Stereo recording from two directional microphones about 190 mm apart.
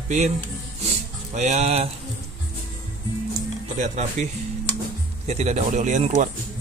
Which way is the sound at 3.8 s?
40° right (ahead or behind).